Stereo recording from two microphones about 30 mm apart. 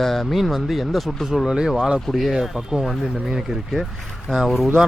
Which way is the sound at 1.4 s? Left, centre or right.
Right.